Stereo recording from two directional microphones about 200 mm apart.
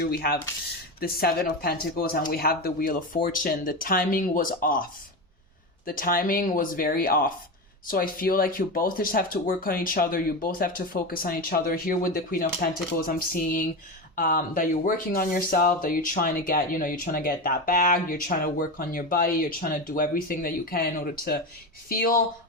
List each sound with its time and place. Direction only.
0.0 s speech: 50° left (ahead or behind)